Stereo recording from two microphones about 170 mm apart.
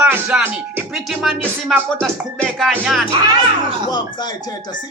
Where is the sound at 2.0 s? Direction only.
Centre (ahead or behind).